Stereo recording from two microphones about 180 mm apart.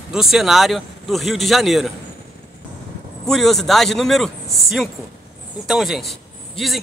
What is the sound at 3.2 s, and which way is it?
A man's voice, centre (ahead or behind).